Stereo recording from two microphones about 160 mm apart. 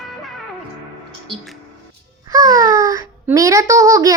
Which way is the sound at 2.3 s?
20° right (ahead or behind).